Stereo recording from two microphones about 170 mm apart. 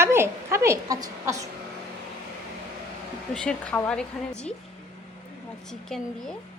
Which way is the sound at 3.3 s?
5° left (ahead or behind).